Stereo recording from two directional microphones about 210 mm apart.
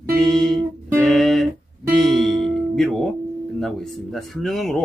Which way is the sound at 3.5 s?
Centre (ahead or behind).